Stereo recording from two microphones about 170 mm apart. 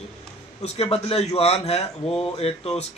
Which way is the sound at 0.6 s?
35° left (ahead or behind).